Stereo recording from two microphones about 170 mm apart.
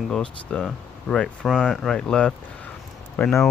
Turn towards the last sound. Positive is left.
turn(degrees=5)  # may be behind; listen again after turning